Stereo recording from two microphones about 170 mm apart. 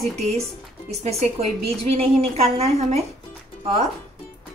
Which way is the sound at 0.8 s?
40° right (ahead or behind).